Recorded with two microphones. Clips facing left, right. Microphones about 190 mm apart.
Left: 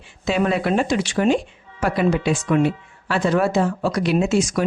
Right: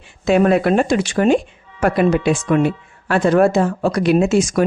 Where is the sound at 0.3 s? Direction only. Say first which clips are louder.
Right 6 dB; 55° right (ahead or behind).